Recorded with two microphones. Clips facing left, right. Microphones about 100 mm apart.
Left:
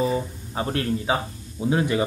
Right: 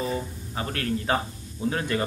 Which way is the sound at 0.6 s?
25° left (ahead or behind).